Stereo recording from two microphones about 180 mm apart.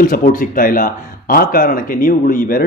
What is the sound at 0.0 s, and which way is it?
Speech, 50° left (ahead or behind).